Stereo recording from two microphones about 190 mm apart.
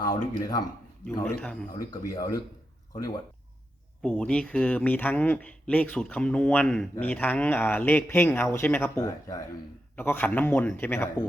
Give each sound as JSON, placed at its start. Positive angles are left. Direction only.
{"t": 0.3, "sound": "speech", "side_deg": 20}
{"t": 1.2, "sound": "speech", "side_deg": 5}
{"t": 1.7, "sound": "speech", "side_deg": 20}
{"t": 4.0, "sound": "speech", "side_deg": 5}